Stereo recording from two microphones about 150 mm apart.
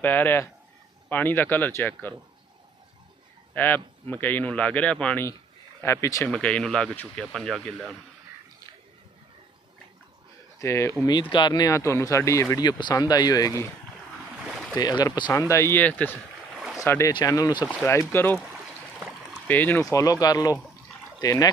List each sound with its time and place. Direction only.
0.0 s speech: 10° left (ahead or behind)
3.5 s speech: 10° left (ahead or behind)
5.8 s speech: 20° left (ahead or behind)
6.2 s speech: 5° left (ahead or behind)
10.6 s speech: 20° left (ahead or behind)
11.1 s speech: 30° left (ahead or behind)
14.4 s boat: centre (ahead or behind)
14.8 s speech: 30° left (ahead or behind)
15.5 s speech: 15° left (ahead or behind)
17.6 s speech: 15° left (ahead or behind)